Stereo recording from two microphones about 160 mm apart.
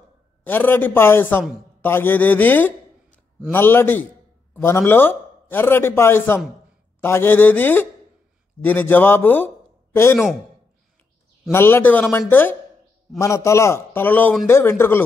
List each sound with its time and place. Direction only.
0.5 s a man's voice: 10° left (ahead or behind)
11.5 s a man's voice: 15° left (ahead or behind)